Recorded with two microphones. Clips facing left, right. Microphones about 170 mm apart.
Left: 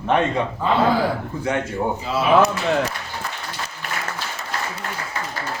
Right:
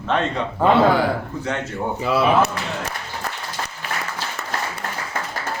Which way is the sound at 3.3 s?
65° right (ahead or behind).